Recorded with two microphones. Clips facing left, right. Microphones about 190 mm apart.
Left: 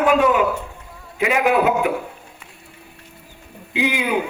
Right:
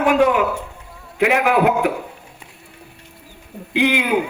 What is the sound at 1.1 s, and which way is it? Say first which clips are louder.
Speech: right 2 dB; 65° right (ahead or behind).